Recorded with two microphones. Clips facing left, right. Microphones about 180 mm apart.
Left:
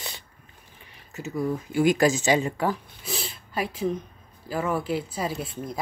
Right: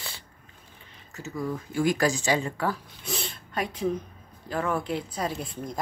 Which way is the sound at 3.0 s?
5° left (ahead or behind).